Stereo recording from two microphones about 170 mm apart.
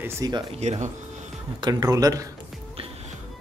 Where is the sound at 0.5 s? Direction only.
40° right (ahead or behind).